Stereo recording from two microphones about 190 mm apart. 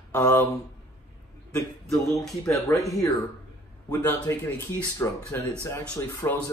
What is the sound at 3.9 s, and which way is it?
Speech, 10° left (ahead or behind).